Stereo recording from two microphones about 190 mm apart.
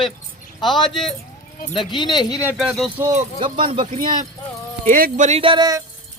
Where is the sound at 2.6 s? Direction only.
Centre (ahead or behind).